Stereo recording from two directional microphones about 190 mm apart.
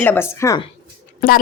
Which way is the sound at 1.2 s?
50° left (ahead or behind).